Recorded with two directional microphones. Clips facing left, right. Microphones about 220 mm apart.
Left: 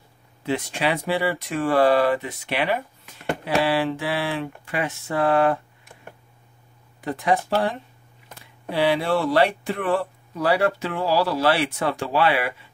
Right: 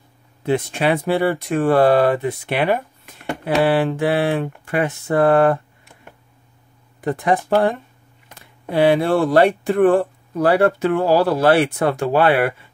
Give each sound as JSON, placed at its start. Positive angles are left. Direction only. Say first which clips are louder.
{"t": 0.5, "sound": "speech", "louder": "right 6 dB", "side_deg": -55}
{"t": 7.0, "sound": "speech", "louder": "right 3 dB", "side_deg": -50}
{"t": 8.7, "sound": "speech", "louder": "right 6 dB", "side_deg": -50}